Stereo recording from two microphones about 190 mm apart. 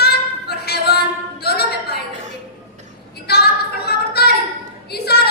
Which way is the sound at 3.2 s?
55° left (ahead or behind).